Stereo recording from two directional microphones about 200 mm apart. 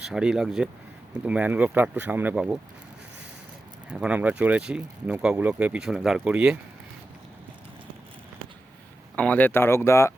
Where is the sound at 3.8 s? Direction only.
5° right (ahead or behind).